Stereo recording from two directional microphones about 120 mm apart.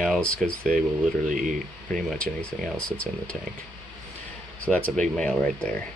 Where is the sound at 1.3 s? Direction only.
90° right.